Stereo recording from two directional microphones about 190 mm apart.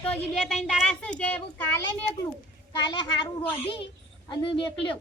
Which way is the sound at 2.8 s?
25° left (ahead or behind).